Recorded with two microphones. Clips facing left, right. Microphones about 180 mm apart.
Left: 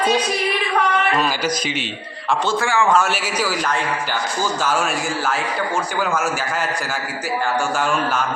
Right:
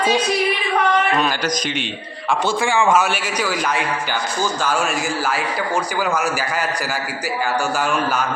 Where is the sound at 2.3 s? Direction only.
15° right (ahead or behind).